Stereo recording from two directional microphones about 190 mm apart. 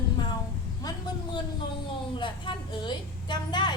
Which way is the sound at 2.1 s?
25° left (ahead or behind).